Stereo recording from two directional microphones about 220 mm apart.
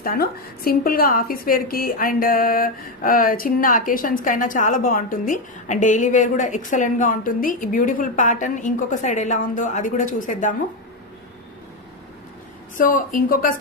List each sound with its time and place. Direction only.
0.0 s a woman's voice: 40° left (ahead or behind)
12.7 s a woman's voice: 35° left (ahead or behind)